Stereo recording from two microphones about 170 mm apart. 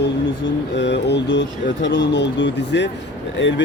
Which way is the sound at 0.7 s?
90° left.